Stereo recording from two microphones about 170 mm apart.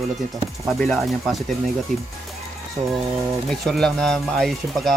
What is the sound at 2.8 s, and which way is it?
Speech, 40° right (ahead or behind).